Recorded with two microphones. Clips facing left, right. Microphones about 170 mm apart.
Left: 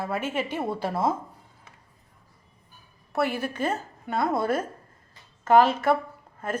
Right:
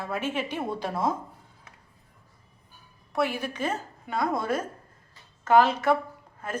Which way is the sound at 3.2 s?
50° left (ahead or behind).